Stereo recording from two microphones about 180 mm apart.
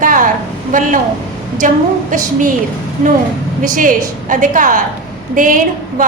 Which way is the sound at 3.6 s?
50° right (ahead or behind).